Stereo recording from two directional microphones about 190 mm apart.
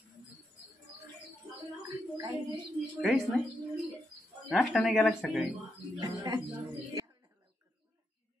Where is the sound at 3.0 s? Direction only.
Centre (ahead or behind).